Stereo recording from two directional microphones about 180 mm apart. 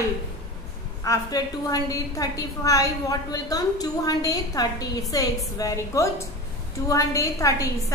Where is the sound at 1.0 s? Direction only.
20° left (ahead or behind).